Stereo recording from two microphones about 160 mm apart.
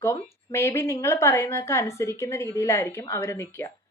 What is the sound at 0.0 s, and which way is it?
Speech, 15° left (ahead or behind).